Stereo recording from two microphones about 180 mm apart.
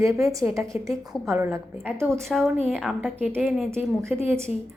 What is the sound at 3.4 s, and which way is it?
Speech, 5° right (ahead or behind).